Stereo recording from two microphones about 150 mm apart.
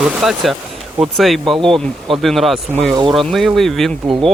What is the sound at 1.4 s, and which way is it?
Speech, 35° right (ahead or behind).